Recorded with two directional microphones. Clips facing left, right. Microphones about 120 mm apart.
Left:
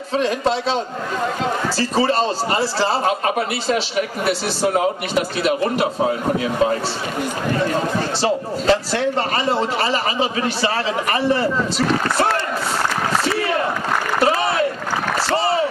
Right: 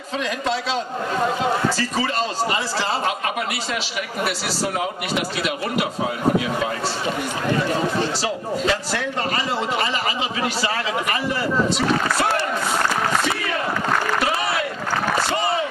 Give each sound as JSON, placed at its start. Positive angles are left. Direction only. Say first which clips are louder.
{"t": 0.1, "sound": "a man's voice", "louder": "left 5 dB", "side_deg": 30}
{"t": 1.8, "sound": "a man's voice", "louder": "left 5 dB", "side_deg": 30}
{"t": 8.2, "sound": "a man's voice", "louder": "left 3 dB", "side_deg": 30}
{"t": 15.3, "sound": "a sound", "louder": "left 4 dB", "side_deg": 30}